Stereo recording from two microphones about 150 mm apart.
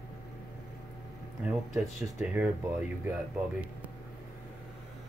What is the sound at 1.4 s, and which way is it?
Speech, 5° right (ahead or behind).